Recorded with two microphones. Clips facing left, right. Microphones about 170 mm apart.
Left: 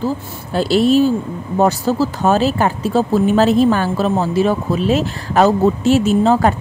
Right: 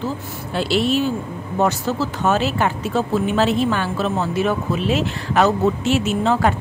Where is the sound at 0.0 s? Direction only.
40° left (ahead or behind).